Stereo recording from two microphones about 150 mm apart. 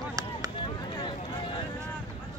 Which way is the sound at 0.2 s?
25° right (ahead or behind).